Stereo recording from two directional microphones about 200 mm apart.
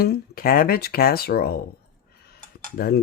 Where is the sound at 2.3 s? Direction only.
50° left (ahead or behind).